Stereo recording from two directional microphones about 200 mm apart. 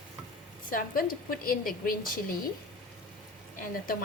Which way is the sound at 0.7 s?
45° left (ahead or behind).